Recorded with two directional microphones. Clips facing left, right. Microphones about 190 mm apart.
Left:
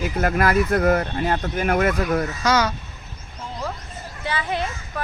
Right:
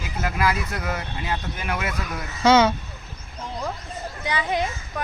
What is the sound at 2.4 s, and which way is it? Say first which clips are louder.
Speech: right 8 dB; 25° right (ahead or behind).